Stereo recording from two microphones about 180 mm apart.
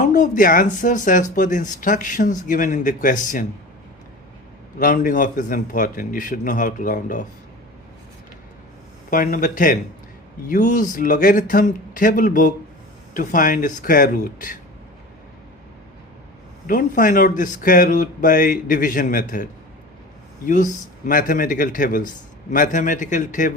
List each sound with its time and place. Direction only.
0.0 s speech: 45° left (ahead or behind)
4.8 s speech: 50° left (ahead or behind)
9.0 s speech: 50° left (ahead or behind)
16.6 s speech: 50° left (ahead or behind)
21.1 s speech: 50° left (ahead or behind)